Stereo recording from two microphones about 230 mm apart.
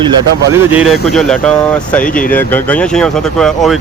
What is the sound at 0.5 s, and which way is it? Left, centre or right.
Speech, centre.